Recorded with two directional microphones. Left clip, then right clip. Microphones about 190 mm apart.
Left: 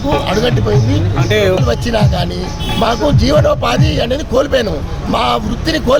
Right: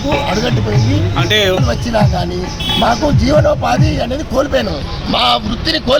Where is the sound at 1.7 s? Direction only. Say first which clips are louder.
Even; 25° left (ahead or behind).